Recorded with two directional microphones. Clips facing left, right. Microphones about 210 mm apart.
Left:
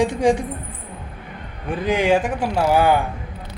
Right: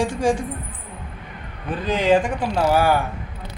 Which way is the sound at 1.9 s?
10° left (ahead or behind).